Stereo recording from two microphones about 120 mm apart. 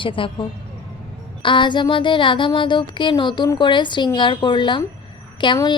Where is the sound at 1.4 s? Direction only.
40° left (ahead or behind).